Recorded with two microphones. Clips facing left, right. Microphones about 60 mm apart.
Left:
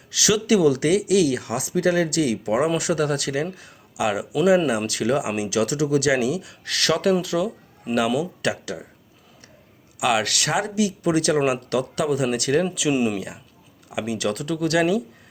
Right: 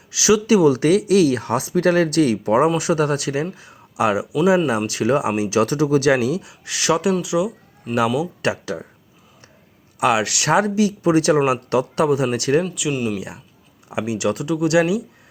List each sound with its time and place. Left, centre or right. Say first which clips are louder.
0.1 s speech: right 4 dB; right
4.4 s speech: right 1 dB; right
6.5 s speech: right 3 dB; centre
8.4 s speech: right 3 dB; right
10.0 s speech: right 3 dB; right
10.5 s speech: right 7 dB; right
12.9 s speech: left 2 dB; centre
14.0 s speech: right 3 dB; right